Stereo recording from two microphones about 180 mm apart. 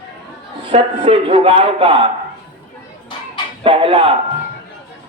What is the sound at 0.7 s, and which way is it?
A man's voice, 35° right (ahead or behind).